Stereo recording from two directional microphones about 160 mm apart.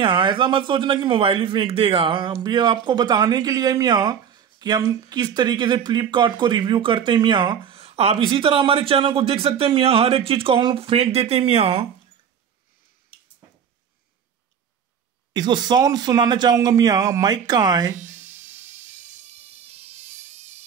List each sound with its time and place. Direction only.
0.0 s a man's voice: 30° right (ahead or behind)
15.3 s speech: 30° right (ahead or behind)
17.9 s music: 50° right (ahead or behind)